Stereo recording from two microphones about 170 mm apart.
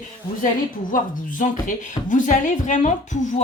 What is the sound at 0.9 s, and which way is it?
Speech, 50° left (ahead or behind).